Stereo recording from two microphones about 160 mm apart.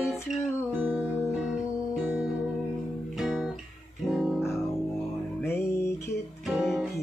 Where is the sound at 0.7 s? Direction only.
10° right (ahead or behind).